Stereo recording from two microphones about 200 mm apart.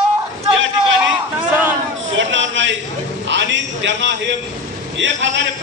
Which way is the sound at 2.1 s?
70° right (ahead or behind).